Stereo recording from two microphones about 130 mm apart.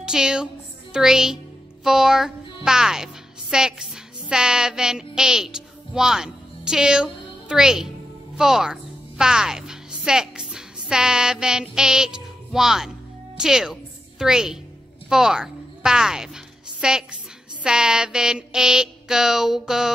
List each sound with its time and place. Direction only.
0.0 s a woman's voice: 5° right (ahead or behind)
0.9 s mantra: 5° right (ahead or behind)
1.9 s a child's voice: 5° right (ahead or behind)
8.4 s mantra: 5° right (ahead or behind)
9.2 s a child's voice: 5° right (ahead or behind)
12.5 s mantra: 5° right (ahead or behind)
13.4 s speech: 5° right (ahead or behind)
16.8 s mantra: 5° right (ahead or behind)